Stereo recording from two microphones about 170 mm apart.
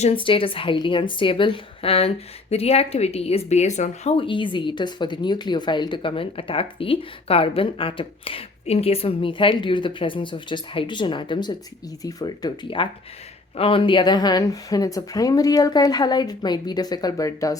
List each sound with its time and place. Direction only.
0.0 s a woman's voice: 30° left (ahead or behind)